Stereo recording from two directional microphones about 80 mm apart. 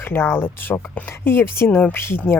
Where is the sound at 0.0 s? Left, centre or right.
Left.